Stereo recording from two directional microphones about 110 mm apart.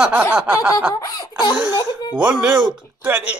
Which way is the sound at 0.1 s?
20° right (ahead or behind).